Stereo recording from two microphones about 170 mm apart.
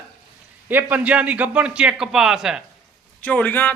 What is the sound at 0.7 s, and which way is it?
A man's voice, 10° right (ahead or behind).